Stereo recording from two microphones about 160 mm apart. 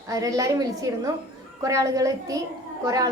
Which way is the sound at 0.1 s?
20° right (ahead or behind).